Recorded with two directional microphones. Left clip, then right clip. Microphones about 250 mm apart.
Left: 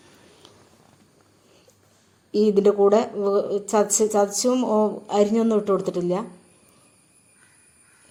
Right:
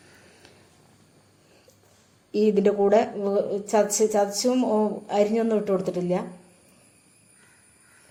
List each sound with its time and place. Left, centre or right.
2.3 s speech: left